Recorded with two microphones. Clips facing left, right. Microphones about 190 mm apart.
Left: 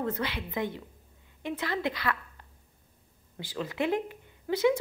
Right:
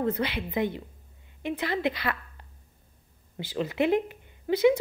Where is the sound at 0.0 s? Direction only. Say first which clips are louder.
Right 4 dB; 20° right (ahead or behind).